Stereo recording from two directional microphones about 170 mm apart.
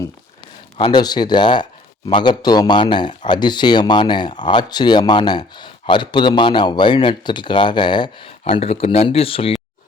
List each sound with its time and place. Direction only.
0.8 s speech: 25° left (ahead or behind)